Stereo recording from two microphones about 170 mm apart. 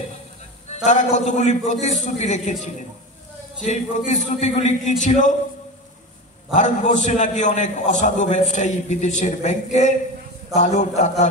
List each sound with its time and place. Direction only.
0.8 s a man's voice: 45° left (ahead or behind)
6.5 s a man's voice: 45° left (ahead or behind)